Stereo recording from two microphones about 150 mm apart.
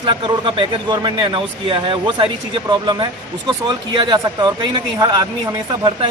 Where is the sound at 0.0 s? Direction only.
30° right (ahead or behind).